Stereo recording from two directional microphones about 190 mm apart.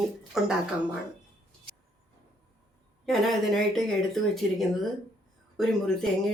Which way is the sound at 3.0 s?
Centre (ahead or behind).